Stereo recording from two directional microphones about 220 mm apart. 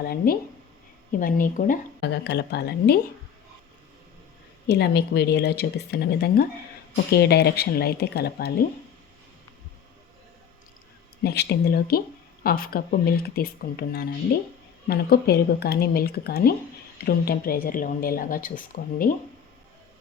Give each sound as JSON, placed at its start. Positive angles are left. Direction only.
{"t": 0.2, "sound": "speech", "side_deg": 40}
{"t": 4.7, "sound": "speech", "side_deg": 50}
{"t": 11.2, "sound": "speech", "side_deg": 45}